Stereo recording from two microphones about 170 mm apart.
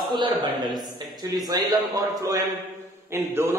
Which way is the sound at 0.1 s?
25° right (ahead or behind).